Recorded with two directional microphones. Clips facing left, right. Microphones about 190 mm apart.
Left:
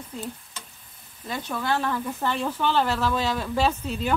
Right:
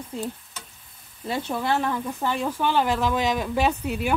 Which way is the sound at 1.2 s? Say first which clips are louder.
Right 3 dB; 25° right (ahead or behind).